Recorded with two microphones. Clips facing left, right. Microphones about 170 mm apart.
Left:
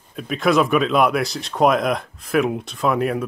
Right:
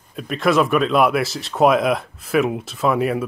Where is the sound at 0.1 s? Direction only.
Centre (ahead or behind).